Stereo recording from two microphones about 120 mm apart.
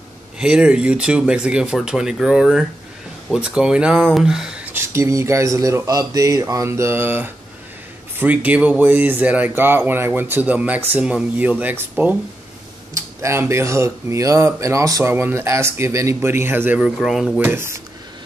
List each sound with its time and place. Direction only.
0.4 s speech: 10° right (ahead or behind)
4.7 s speech: 25° right (ahead or behind)
12.9 s speech: 25° right (ahead or behind); by 17.3 s 5° right (ahead or behind)
17.4 s speech: 20° right (ahead or behind)